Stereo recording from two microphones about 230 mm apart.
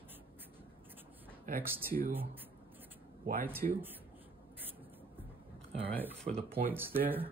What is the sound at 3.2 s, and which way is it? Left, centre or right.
Speech, right.